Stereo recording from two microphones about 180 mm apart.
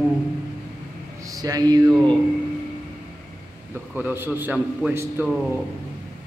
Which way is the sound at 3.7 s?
10° right (ahead or behind).